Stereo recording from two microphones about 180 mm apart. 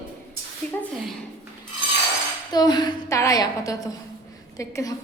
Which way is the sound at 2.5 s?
25° left (ahead or behind).